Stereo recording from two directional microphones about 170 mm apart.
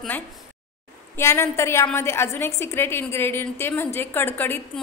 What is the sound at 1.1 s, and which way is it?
A woman's voice, 15° left (ahead or behind).